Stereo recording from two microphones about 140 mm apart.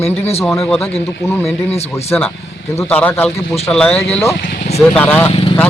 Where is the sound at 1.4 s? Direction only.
50° left (ahead or behind).